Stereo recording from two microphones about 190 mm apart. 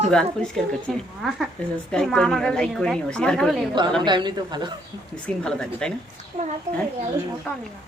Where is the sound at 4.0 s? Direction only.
25° right (ahead or behind).